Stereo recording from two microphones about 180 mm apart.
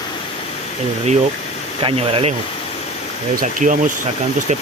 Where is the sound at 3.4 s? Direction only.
45° right (ahead or behind).